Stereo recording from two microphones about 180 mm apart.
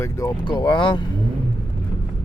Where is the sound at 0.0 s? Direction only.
20° left (ahead or behind).